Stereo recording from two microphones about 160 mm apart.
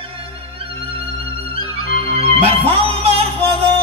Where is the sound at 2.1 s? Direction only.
40° right (ahead or behind).